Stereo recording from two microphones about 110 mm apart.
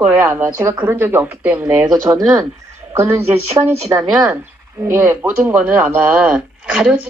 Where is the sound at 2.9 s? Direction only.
25° right (ahead or behind).